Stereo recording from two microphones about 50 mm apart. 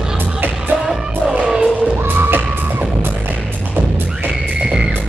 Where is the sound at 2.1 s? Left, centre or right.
Right.